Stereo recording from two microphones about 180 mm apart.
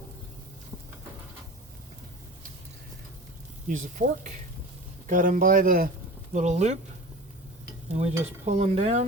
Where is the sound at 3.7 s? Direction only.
45° right (ahead or behind).